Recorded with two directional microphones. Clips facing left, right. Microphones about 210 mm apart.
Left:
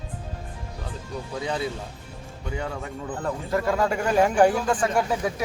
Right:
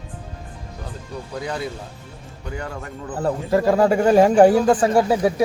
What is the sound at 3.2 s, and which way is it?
Speech, 30° right (ahead or behind).